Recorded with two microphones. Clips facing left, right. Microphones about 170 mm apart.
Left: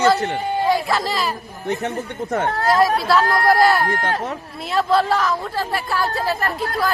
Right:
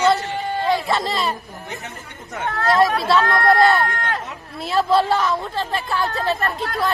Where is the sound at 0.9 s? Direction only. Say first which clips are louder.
Even; centre (ahead or behind).